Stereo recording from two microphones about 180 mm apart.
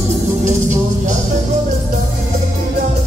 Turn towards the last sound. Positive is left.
turn(degrees=-40)  # may be behind; listen again after turning